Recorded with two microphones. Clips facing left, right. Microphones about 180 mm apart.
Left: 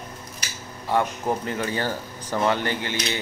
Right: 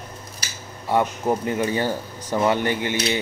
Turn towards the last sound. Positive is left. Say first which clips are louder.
# right 5 dB
turn(degrees=-15)  # may be behind; listen again after turning